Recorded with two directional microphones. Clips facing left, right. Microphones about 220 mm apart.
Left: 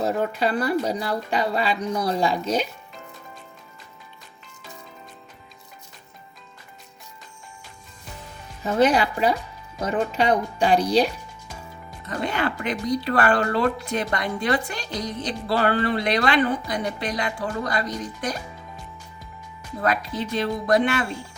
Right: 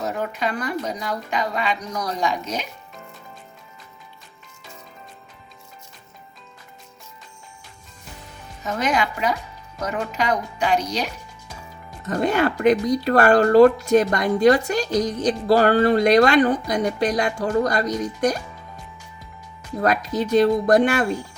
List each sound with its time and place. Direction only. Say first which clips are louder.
0.0 s speech: left 3 dB; 30° left (ahead or behind)
8.6 s speech: left 4 dB; 30° left (ahead or behind)
12.0 s speech: right 6 dB; 45° right (ahead or behind)
19.8 s speech: right 4 dB; 45° right (ahead or behind)